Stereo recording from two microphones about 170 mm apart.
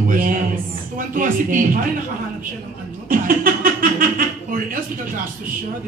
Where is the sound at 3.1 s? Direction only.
55° right (ahead or behind).